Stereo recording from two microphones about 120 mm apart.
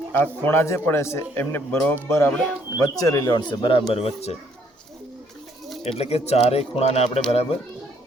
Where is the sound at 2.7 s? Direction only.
30° left (ahead or behind); by 4.4 s 60° left (ahead or behind).